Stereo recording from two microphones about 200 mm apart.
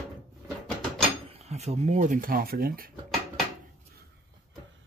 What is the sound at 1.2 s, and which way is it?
Speech, 30° right (ahead or behind).